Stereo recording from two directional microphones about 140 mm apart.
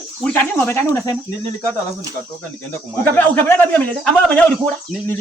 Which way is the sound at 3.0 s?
10° left (ahead or behind).